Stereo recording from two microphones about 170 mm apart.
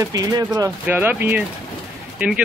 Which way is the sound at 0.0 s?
20° right (ahead or behind).